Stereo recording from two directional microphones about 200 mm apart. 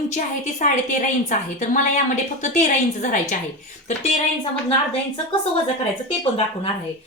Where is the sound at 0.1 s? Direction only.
40° left (ahead or behind).